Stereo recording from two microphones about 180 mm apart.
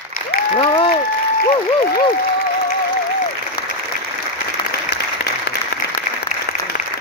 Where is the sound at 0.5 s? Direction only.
30° left (ahead or behind).